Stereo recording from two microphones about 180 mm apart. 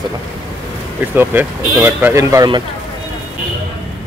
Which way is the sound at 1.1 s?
10° right (ahead or behind).